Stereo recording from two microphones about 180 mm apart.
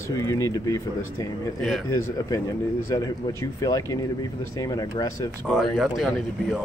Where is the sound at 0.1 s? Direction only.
15° left (ahead or behind).